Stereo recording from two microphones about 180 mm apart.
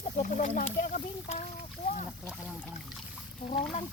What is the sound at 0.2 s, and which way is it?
Speech, 45° left (ahead or behind).